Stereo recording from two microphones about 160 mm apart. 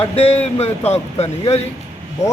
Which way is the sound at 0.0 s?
35° left (ahead or behind).